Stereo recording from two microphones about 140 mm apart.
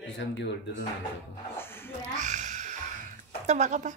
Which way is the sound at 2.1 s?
60° right (ahead or behind).